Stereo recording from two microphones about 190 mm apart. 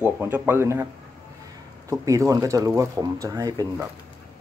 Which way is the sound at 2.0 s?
15° right (ahead or behind).